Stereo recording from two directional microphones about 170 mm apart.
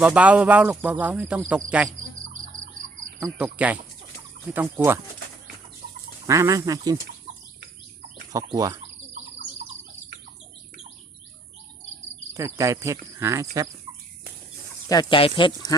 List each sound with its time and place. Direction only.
0.0 s speech: 5° right (ahead or behind)
3.2 s speech: 10° right (ahead or behind)
6.2 s speech: 20° right (ahead or behind)
8.3 s speech: 20° right (ahead or behind)
12.4 s speech: 20° right (ahead or behind)
14.8 s speech: 25° left (ahead or behind)